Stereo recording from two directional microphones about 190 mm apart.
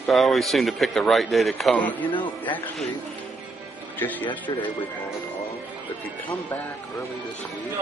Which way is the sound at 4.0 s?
10° left (ahead or behind).